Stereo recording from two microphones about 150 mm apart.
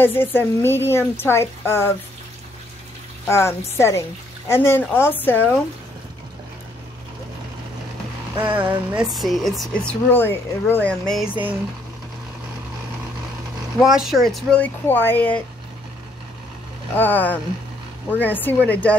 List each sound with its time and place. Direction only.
0.0 s speech: 15° left (ahead or behind)
3.3 s speech: 15° left (ahead or behind)
8.4 s a sound: 10° right (ahead or behind)
9.1 s speech: centre (ahead or behind)
13.7 s speech: 5° right (ahead or behind)
14.6 s speech: 15° left (ahead or behind)
16.9 s speech: 10° left (ahead or behind)